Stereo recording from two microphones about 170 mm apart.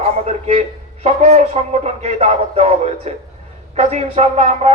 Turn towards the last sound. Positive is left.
turn(degrees=-40)  # may be behind; listen again after turning